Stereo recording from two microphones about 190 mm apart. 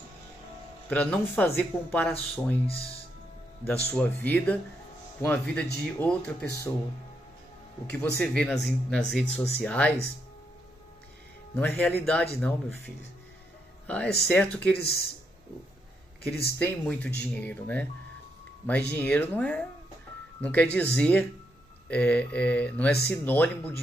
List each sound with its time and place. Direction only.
0.8 s speech: 5° left (ahead or behind)
3.6 s speech: 10° left (ahead or behind)
7.9 s speech: 10° left (ahead or behind)
11.5 s speech: 10° left (ahead or behind)
14.8 s speech: 55° left (ahead or behind)
16.2 s speech: 55° left (ahead or behind)
16.5 s speech: 10° left (ahead or behind)
18.9 s speech: 10° left (ahead or behind)